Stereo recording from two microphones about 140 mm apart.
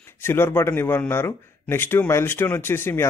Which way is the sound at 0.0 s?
15° left (ahead or behind).